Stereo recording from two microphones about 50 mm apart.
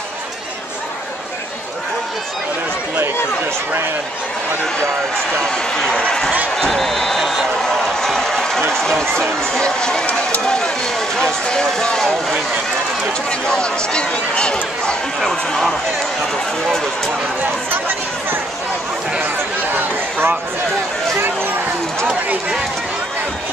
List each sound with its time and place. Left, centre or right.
5.4 s speech: centre
6.5 s a sound: centre
9.6 s speech: centre
13.3 s speech: centre
17.4 s speech: right
19.7 s speech: right